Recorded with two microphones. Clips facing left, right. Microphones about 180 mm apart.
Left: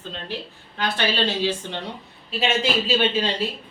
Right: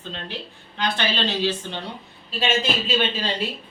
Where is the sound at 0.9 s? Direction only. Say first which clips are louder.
Left 3 dB; 5° left (ahead or behind).